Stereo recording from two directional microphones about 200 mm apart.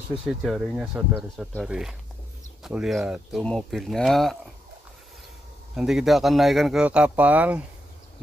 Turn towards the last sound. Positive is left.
turn(degrees=-5)  # may be behind; listen again after turning